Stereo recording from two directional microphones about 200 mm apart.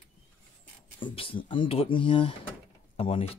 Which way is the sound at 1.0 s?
25° left (ahead or behind).